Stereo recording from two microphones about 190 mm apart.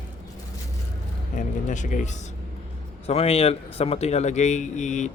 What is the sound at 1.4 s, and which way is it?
Speech, 40° left (ahead or behind).